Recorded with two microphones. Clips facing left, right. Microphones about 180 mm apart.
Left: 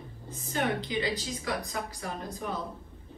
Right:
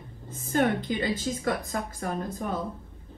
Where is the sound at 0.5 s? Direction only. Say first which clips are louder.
Right 5 dB; 50° right (ahead or behind).